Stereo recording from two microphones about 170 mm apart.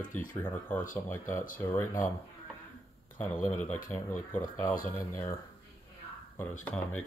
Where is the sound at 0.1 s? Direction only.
10° left (ahead or behind).